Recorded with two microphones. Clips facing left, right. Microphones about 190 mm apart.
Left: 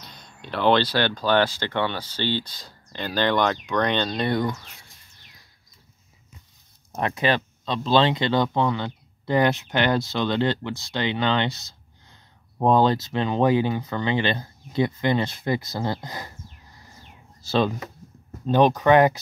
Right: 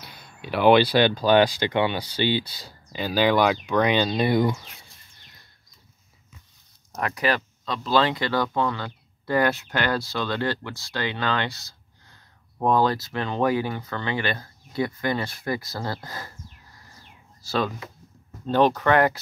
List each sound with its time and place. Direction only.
0.0 s speech: 10° right (ahead or behind)
6.9 s speech: 25° left (ahead or behind)
17.4 s a sound: 25° left (ahead or behind)
18.5 s speech: 15° left (ahead or behind)